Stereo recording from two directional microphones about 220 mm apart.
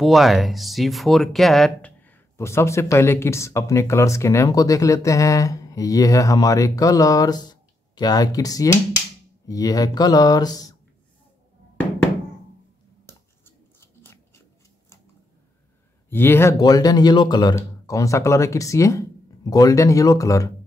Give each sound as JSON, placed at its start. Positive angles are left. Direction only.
{"t": 0.0, "sound": "speech", "side_deg": 0}
{"t": 13.7, "sound": "biting", "side_deg": 10}
{"t": 16.1, "sound": "speech", "side_deg": 10}